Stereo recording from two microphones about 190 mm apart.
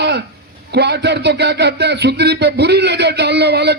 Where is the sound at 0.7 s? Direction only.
60° right (ahead or behind).